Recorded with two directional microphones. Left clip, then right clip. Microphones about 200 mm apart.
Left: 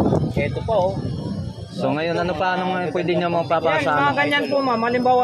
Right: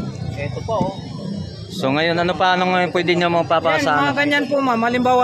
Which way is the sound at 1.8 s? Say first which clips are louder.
Right 3 dB; 10° right (ahead or behind).